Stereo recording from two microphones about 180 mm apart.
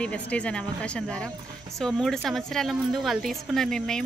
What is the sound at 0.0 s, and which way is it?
A woman's voice, 5° left (ahead or behind).